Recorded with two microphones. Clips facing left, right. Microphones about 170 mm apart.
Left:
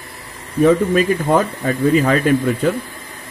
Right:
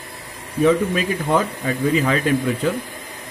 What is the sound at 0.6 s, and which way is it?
A man's voice, 45° left (ahead or behind).